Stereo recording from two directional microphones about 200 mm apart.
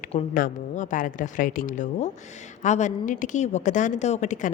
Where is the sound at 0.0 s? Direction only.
30° left (ahead or behind).